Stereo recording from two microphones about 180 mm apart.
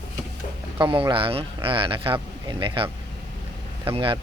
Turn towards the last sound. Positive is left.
turn(degrees=-30)  # may be behind; listen again after turning